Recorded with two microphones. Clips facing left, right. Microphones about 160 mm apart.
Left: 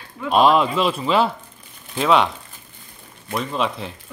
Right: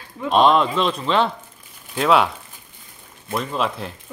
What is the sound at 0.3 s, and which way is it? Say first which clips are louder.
Speech: even; 5° left (ahead or behind).